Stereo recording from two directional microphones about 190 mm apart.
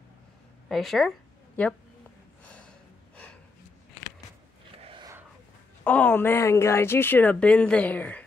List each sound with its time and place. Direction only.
0.7 s speech: centre (ahead or behind)
2.4 s gasp: 5° left (ahead or behind)
4.8 s a sound: 25° right (ahead or behind)
5.9 s speech: 10° left (ahead or behind)